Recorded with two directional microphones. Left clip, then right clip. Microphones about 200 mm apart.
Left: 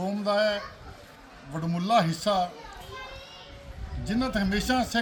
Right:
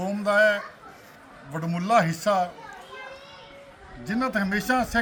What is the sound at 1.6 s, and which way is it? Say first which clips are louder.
Speech: right 2 dB; 5° left (ahead or behind).